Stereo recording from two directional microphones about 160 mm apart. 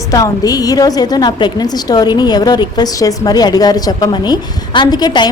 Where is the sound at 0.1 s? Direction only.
20° left (ahead or behind).